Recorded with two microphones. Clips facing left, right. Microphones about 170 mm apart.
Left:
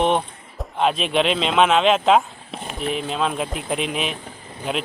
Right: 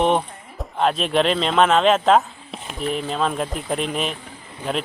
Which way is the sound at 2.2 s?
Centre (ahead or behind).